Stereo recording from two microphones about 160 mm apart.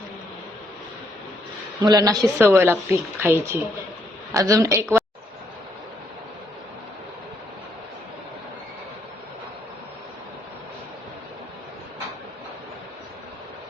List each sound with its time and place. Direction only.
1.8 s a woman's voice: 25° right (ahead or behind)